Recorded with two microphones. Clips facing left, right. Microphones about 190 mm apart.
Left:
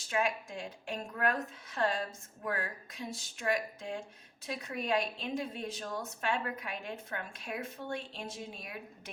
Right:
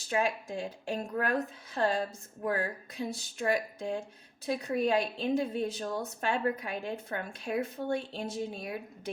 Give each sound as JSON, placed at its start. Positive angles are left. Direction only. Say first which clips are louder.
{"t": 0.1, "sound": "a woman's voice", "louder": "right 3 dB", "side_deg": -35}